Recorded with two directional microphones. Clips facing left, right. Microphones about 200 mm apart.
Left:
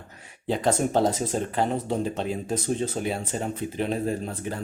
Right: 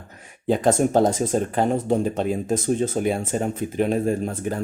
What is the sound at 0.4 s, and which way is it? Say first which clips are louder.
Speech: right 5 dB; 45° right (ahead or behind).